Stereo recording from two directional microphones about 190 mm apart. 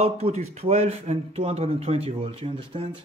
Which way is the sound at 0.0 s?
35° right (ahead or behind).